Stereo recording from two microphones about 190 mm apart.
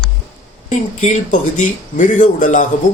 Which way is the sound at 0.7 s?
40° left (ahead or behind).